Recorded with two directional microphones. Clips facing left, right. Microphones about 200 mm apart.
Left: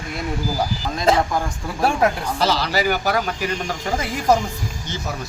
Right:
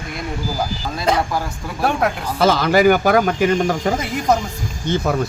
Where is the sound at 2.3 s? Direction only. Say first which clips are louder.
Right 6 dB; 50° right (ahead or behind).